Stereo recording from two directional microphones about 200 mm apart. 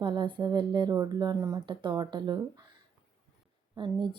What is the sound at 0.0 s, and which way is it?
Speech, 25° right (ahead or behind).